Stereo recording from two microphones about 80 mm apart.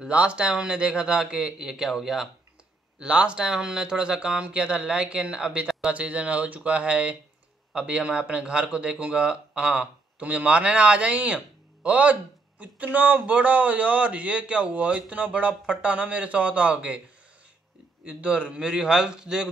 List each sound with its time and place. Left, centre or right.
0.0 s speech: centre
18.0 s speech: centre